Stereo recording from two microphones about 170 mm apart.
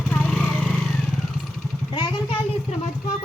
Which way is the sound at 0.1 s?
5° left (ahead or behind).